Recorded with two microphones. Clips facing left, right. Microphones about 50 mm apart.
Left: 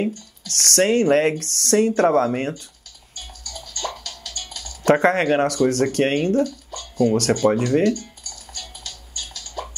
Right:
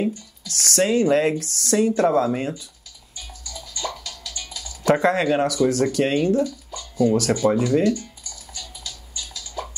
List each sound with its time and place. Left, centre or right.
0.0 s speech: left
3.2 s music: left